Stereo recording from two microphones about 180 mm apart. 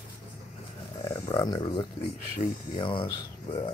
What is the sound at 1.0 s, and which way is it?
Speech, 25° left (ahead or behind).